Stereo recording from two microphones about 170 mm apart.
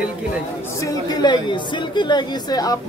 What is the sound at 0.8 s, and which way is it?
A woman's voice, 25° left (ahead or behind).